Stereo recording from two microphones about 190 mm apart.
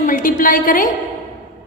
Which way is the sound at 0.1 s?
45° left (ahead or behind).